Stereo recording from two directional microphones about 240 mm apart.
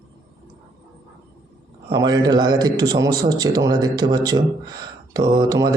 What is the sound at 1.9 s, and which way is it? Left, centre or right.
A man's voice, centre.